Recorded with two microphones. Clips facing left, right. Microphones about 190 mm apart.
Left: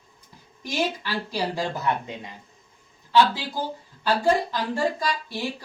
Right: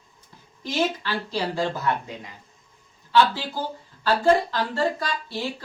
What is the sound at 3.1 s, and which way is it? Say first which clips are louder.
Speech: even; 15° left (ahead or behind).